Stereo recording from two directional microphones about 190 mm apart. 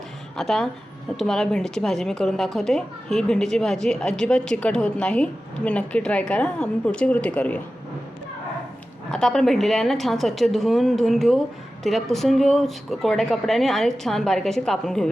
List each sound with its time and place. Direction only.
0.3 s a woman's voice: centre (ahead or behind)
9.1 s a woman's voice: centre (ahead or behind)